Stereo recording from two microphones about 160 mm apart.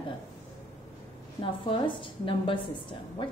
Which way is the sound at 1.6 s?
30° left (ahead or behind).